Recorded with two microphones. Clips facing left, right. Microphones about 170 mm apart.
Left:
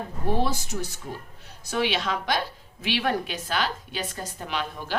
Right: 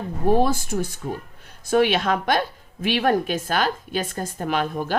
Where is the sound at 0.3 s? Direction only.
50° right (ahead or behind).